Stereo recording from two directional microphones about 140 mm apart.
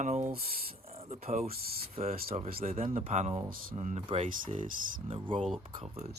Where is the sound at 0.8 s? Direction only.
45° right (ahead or behind).